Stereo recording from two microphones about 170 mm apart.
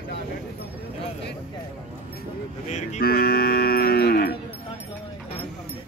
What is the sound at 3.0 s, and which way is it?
Cattle, 65° left (ahead or behind).